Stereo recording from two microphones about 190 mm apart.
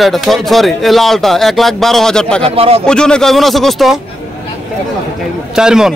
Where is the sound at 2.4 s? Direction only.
30° right (ahead or behind).